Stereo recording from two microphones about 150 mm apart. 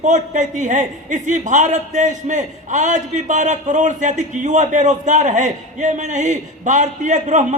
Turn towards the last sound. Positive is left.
turn(degrees=-55)  # may be behind; listen again after turning